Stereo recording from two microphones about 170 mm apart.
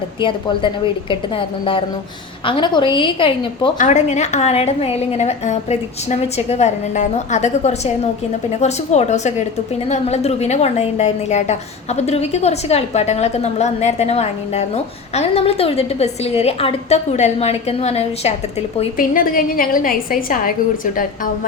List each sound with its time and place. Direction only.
0.2 s a woman's voice: 30° left (ahead or behind)
2.5 s a woman's voice: 30° left (ahead or behind)
3.8 s a woman's voice: 45° left (ahead or behind)
18.9 s a woman's voice: 55° left (ahead or behind)